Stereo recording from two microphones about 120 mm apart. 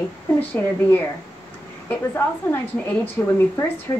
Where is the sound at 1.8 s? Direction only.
15° left (ahead or behind).